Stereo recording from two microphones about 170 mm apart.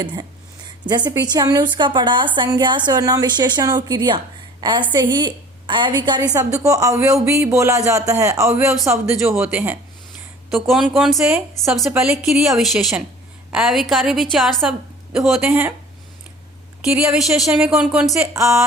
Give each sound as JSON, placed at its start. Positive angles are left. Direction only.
{"t": 0.0, "sound": "a woman's voice", "side_deg": -25}
{"t": 16.8, "sound": "a woman's voice", "side_deg": 0}
{"t": 18.3, "sound": "speech", "side_deg": -15}